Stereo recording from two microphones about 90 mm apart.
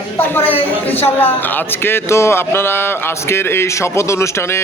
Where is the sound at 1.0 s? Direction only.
25° left (ahead or behind).